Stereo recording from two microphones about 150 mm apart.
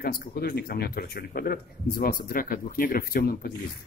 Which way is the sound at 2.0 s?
80° left.